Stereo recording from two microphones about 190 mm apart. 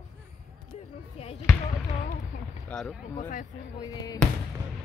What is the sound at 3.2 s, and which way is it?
Speech, 45° left (ahead or behind).